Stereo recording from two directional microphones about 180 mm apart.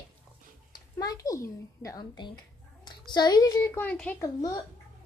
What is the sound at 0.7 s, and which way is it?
Speech, 20° left (ahead or behind).